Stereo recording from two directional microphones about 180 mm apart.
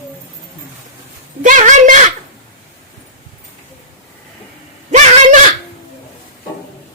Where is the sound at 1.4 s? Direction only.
45° right (ahead or behind).